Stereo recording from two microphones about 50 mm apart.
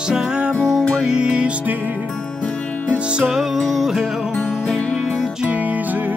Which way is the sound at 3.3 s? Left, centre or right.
Centre.